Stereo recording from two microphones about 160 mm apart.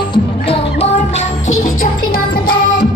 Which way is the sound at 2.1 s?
65° left (ahead or behind).